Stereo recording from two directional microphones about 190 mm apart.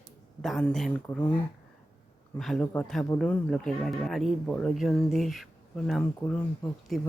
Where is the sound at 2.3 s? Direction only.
5° left (ahead or behind).